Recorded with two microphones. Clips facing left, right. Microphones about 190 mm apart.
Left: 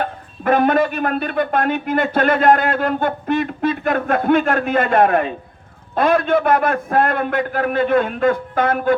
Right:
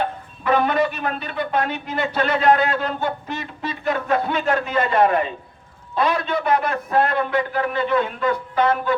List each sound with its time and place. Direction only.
0.0 s a man's voice: 50° left (ahead or behind)